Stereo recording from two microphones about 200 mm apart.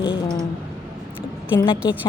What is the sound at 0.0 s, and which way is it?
Mechanisms, 25° left (ahead or behind).